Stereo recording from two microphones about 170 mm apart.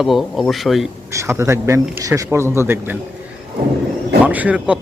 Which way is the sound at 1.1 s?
15° right (ahead or behind).